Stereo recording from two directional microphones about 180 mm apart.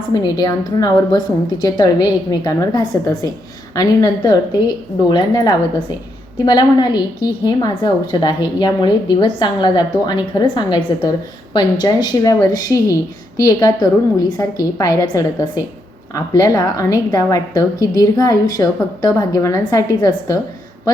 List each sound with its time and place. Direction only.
0.1 s a woman's voice: 20° left (ahead or behind)